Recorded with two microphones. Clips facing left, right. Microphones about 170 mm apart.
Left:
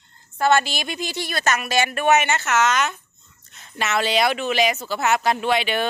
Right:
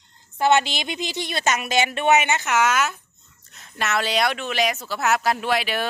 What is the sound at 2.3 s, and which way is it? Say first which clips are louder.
A woman's voice: even; 15° right (ahead or behind).